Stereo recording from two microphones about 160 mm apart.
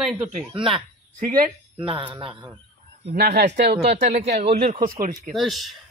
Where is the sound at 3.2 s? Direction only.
70° right (ahead or behind).